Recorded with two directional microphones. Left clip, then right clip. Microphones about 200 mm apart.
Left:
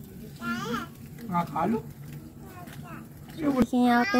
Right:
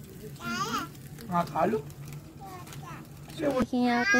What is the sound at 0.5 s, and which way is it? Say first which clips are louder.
Music: right 1 dB; 45° right (ahead or behind).